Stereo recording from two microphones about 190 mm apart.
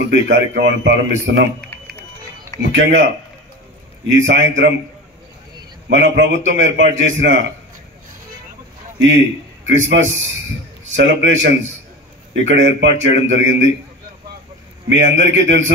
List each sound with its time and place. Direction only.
0.1 s a man's voice: 70° right (ahead or behind)
1.6 s a sound: 10° left (ahead or behind)
2.7 s a man's voice: 75° right (ahead or behind)
4.1 s a man's voice: 75° right (ahead or behind)
5.9 s a man's voice: 70° right (ahead or behind)
9.7 s a man's voice: 75° right (ahead or behind)
14.9 s a man's voice: 70° right (ahead or behind)